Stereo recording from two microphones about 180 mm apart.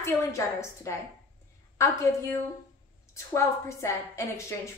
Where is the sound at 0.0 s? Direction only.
15° left (ahead or behind).